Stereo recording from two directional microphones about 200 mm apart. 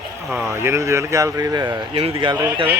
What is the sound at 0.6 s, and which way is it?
Speech, 15° right (ahead or behind).